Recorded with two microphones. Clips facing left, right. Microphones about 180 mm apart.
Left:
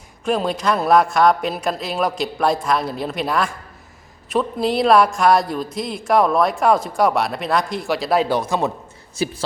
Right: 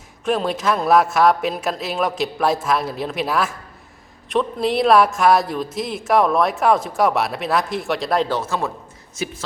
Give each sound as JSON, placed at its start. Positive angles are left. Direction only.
{"t": 0.3, "sound": "speech", "side_deg": 0}
{"t": 9.1, "sound": "speech", "side_deg": 35}